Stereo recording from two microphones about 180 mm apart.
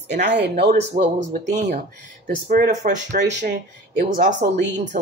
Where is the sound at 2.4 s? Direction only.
50° right (ahead or behind).